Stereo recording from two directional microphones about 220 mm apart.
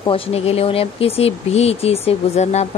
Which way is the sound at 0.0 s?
25° left (ahead or behind).